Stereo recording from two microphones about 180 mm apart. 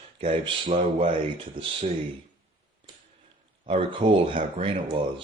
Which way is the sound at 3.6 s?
30° right (ahead or behind).